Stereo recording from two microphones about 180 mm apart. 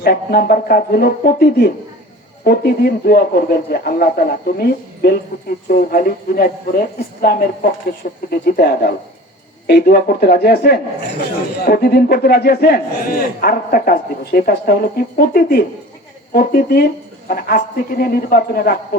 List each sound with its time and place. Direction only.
0.0 s a man's voice: 60° left (ahead or behind)